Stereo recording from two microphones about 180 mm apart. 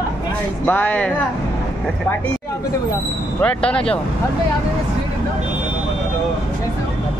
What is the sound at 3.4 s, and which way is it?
Speech, 5° left (ahead or behind).